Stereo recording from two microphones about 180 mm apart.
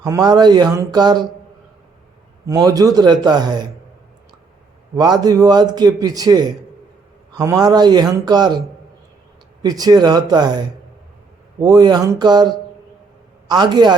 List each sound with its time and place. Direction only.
0.0 s a man's voice: 20° right (ahead or behind)
2.5 s a man's voice: 20° right (ahead or behind)
4.9 s a man's voice: 25° right (ahead or behind)
9.6 s a man's voice: 20° right (ahead or behind)